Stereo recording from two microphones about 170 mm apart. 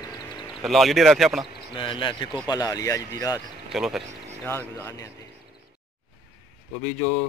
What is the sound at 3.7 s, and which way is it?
Speech, centre (ahead or behind).